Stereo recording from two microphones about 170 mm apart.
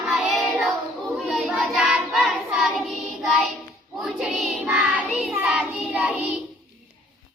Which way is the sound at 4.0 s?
5° right (ahead or behind).